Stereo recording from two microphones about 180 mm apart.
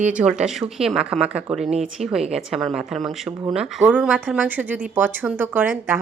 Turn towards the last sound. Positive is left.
turn(degrees=-10)  # may be behind; listen again after turning